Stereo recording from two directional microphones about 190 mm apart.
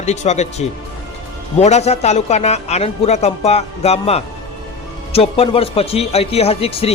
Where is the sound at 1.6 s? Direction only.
35° left (ahead or behind).